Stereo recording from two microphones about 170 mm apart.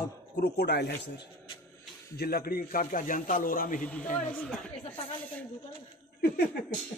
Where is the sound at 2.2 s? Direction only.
60° left (ahead or behind).